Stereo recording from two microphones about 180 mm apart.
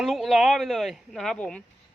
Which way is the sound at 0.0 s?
Centre (ahead or behind).